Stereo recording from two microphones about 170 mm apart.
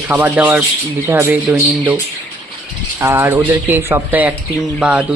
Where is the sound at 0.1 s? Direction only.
10° right (ahead or behind).